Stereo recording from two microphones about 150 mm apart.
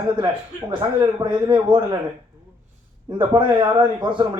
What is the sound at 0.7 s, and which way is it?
A man's voice, 30° right (ahead or behind).